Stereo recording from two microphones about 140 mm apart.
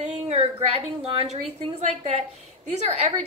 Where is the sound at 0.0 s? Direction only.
50° right (ahead or behind).